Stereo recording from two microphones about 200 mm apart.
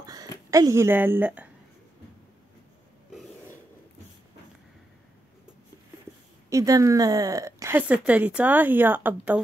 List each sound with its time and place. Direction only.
0.0 s a sound: 20° right (ahead or behind)
0.5 s speech: 15° right (ahead or behind)
6.5 s speech: 15° right (ahead or behind)